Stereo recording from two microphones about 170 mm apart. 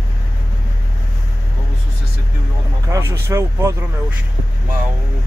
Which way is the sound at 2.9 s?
15° right (ahead or behind).